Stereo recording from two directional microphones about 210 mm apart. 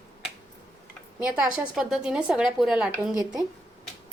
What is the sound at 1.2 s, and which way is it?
Speech, 5° right (ahead or behind).